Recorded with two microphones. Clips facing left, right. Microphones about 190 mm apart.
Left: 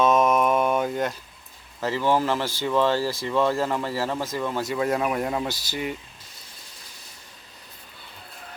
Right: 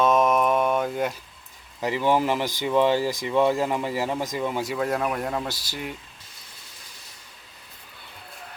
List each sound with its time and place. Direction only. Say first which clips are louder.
0.0 s mantra: even; centre (ahead or behind)
1.8 s speech: even; 15° right (ahead or behind)
4.8 s speech: left 2 dB; centre (ahead or behind)